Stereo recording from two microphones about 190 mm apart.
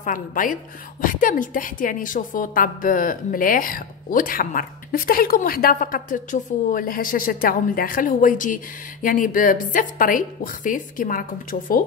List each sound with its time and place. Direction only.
0.0 s a woman's voice: 45° left (ahead or behind)